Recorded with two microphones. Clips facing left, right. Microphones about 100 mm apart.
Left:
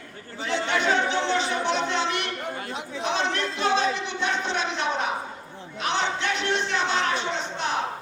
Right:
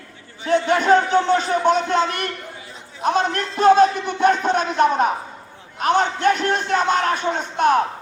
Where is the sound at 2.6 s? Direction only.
75° left (ahead or behind).